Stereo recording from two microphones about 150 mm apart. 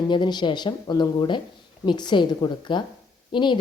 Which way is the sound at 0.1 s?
30° left (ahead or behind).